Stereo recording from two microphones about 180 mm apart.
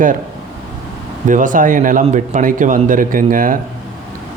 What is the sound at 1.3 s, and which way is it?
A man's voice, 45° right (ahead or behind).